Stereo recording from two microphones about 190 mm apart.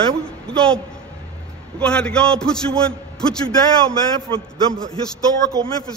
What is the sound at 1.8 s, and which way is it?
A man's voice, 5° left (ahead or behind).